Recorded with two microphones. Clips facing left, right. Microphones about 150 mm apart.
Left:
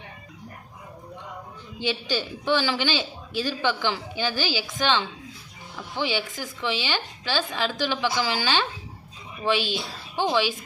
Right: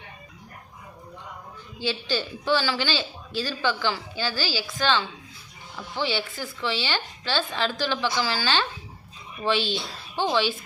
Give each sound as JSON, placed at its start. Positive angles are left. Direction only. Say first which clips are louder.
{"t": 1.8, "sound": "a man's voice", "louder": "even", "side_deg": 15}